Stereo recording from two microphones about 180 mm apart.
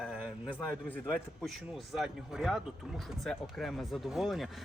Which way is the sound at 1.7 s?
Centre (ahead or behind).